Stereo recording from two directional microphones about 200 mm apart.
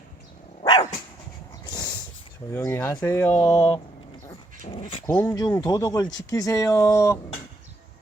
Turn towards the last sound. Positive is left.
turn(degrees=15)  # may be behind; listen again after turning